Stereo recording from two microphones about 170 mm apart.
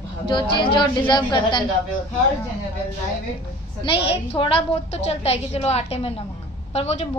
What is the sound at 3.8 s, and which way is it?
A woman's voice, 30° left (ahead or behind).